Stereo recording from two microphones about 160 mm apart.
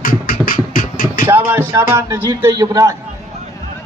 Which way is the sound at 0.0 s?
60° left (ahead or behind).